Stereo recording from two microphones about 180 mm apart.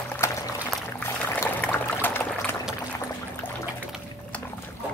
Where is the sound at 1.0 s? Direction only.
10° left (ahead or behind).